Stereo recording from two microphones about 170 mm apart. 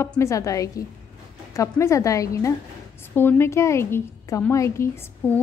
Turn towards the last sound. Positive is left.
turn(degrees=15)  # may be behind; listen again after turning